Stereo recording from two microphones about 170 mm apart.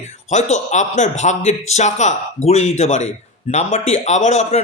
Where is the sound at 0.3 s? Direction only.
45° left (ahead or behind).